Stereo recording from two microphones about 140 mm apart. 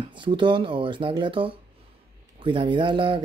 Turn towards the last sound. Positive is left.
turn(degrees=-35)  # may be behind; listen again after turning